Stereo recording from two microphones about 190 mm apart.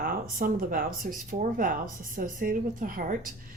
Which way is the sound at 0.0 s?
45° right (ahead or behind).